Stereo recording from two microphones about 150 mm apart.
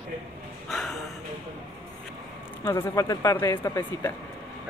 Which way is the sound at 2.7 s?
20° left (ahead or behind).